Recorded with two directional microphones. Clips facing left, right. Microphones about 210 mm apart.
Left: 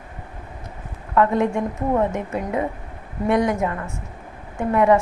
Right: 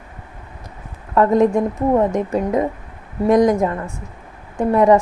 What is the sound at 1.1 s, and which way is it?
A woman's voice, 35° right (ahead or behind).